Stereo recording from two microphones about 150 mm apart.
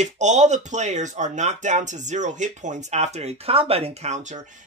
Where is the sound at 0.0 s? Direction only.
50° right (ahead or behind).